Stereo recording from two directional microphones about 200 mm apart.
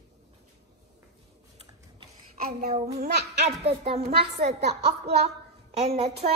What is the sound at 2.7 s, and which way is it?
Speech, 35° right (ahead or behind).